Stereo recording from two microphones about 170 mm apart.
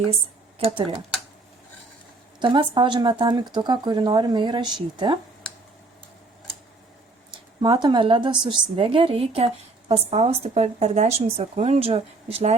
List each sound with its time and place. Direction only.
2.4 s speech: 30° right (ahead or behind)
7.6 s speech: 25° right (ahead or behind)